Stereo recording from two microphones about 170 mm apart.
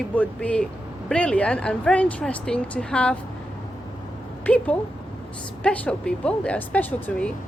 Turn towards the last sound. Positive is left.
turn(degrees=10)  # may be behind; listen again after turning